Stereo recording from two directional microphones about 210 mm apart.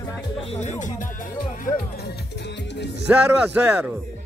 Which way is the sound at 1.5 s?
40° left (ahead or behind).